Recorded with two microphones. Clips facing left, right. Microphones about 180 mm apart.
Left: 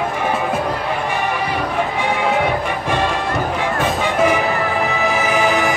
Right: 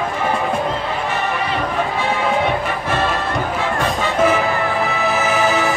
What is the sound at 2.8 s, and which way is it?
Music, 15° left (ahead or behind).